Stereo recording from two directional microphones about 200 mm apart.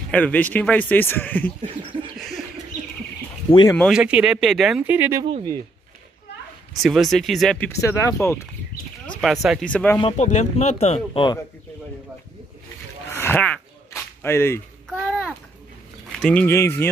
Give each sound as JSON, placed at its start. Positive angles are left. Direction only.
{"t": 0.1, "sound": "speech", "side_deg": 10}
{"t": 2.1, "sound": "snicker", "side_deg": 0}
{"t": 3.4, "sound": "speech", "side_deg": 20}
{"t": 3.7, "sound": "speech", "side_deg": 0}
{"t": 5.2, "sound": "speech", "side_deg": -25}
{"t": 6.8, "sound": "speech", "side_deg": 0}
{"t": 9.2, "sound": "speech", "side_deg": 0}
{"t": 9.9, "sound": "speech", "side_deg": 25}
{"t": 13.1, "sound": "a sound", "side_deg": 10}
{"t": 14.9, "sound": "a sound", "side_deg": 0}
{"t": 16.2, "sound": "speech", "side_deg": 5}